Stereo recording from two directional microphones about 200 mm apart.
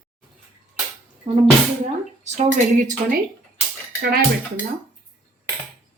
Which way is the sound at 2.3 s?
40° right (ahead or behind).